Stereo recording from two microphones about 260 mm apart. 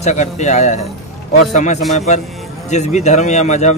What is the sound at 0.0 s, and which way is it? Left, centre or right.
Speech, left.